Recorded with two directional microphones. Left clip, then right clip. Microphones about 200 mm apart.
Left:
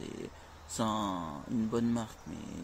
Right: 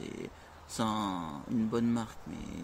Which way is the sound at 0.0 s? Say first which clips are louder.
Right 1 dB; 15° right (ahead or behind).